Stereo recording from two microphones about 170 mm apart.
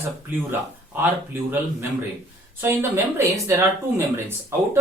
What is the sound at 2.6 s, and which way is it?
Speech, 15° right (ahead or behind).